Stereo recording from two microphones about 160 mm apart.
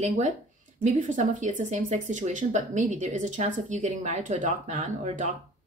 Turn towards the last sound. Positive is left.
turn(degrees=-50)  # may be behind; listen again after turning